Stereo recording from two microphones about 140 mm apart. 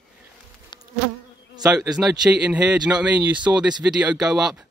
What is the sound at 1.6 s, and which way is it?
A man's voice, 5° right (ahead or behind).